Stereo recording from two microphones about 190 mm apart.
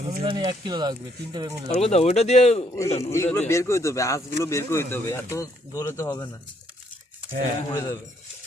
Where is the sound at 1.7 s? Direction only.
35° left (ahead or behind).